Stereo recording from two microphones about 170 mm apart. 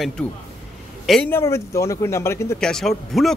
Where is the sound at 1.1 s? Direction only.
10° left (ahead or behind).